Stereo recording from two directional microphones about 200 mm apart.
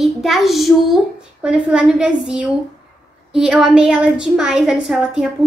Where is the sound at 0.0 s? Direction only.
Centre (ahead or behind).